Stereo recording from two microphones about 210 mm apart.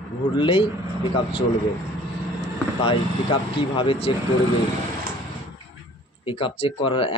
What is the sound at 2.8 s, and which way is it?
Speech, 25° left (ahead or behind).